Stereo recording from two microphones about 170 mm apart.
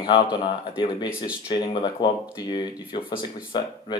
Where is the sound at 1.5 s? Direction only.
25° left (ahead or behind).